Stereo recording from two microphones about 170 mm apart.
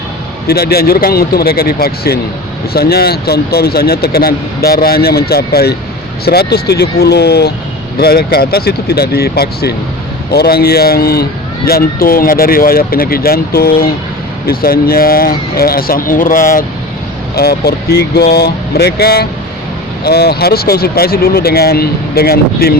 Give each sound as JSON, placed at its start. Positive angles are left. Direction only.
{"t": 0.4, "sound": "a man's voice", "side_deg": 70}
{"t": 17.3, "sound": "a man's voice", "side_deg": 70}